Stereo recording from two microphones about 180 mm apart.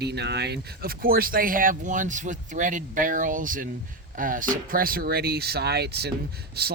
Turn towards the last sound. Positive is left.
turn(degrees=-60)  # may be behind; listen again after turning